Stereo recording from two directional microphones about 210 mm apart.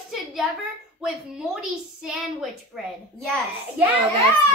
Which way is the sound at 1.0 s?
5° right (ahead or behind).